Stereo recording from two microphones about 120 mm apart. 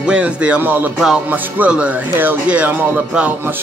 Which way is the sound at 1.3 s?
10° right (ahead or behind).